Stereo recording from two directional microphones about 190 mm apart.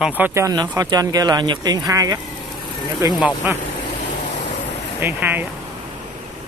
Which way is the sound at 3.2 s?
5° right (ahead or behind).